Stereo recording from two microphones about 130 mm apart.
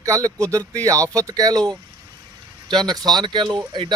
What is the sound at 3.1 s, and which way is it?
Speech, 35° right (ahead or behind).